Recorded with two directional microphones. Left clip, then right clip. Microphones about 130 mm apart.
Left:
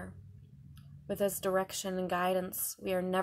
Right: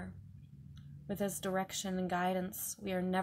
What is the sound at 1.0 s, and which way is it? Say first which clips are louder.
A woman's voice: left 6 dB; 25° left (ahead or behind).